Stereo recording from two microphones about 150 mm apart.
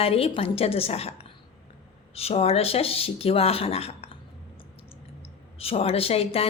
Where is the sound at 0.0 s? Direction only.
40° left (ahead or behind).